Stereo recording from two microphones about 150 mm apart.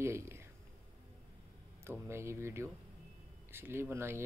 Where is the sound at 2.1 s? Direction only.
15° right (ahead or behind).